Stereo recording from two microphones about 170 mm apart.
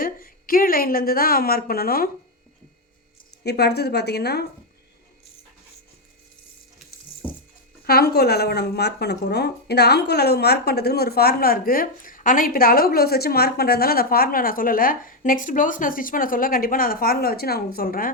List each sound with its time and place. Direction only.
0.0 s speech: 55° left (ahead or behind)
3.4 s a woman's voice: 70° left (ahead or behind)
7.2 s a sound: 10° right (ahead or behind)
7.9 s speech: 65° left (ahead or behind)